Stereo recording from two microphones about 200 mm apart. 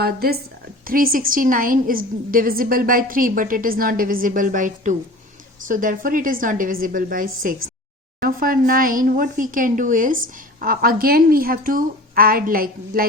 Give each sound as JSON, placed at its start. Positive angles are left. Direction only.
{"t": 0.0, "sound": "speech", "side_deg": -50}